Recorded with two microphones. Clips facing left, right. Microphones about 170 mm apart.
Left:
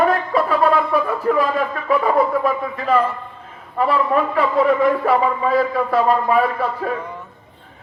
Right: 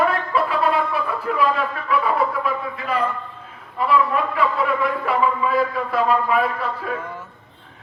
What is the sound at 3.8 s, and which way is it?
A man's voice, 45° left (ahead or behind).